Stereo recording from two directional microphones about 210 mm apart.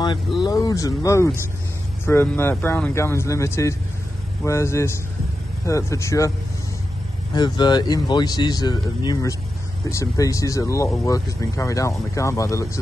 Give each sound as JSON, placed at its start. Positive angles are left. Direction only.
{"t": 0.0, "sound": "speech", "side_deg": 20}
{"t": 7.3, "sound": "speech", "side_deg": 20}